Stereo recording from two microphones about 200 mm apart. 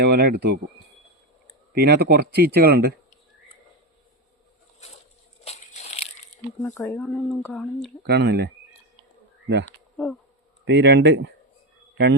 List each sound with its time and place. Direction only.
0.0 s speech: 55° right (ahead or behind)
1.7 s speech: 55° right (ahead or behind)
5.5 s crushing: 35° left (ahead or behind)
6.6 s speech: 15° left (ahead or behind)
8.0 s speech: 55° right (ahead or behind)
10.0 s speech: centre (ahead or behind)
10.7 s speech: 60° right (ahead or behind)